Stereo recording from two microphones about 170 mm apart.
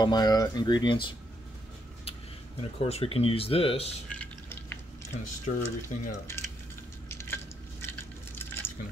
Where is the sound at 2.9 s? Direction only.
35° left (ahead or behind).